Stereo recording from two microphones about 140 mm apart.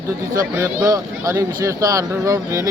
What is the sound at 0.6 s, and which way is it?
Speech, 25° right (ahead or behind).